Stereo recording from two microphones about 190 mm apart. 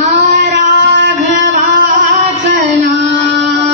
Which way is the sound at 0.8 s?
65° right (ahead or behind).